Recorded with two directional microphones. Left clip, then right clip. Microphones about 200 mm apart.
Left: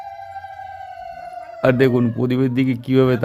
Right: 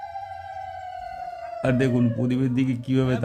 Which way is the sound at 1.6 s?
15° left (ahead or behind).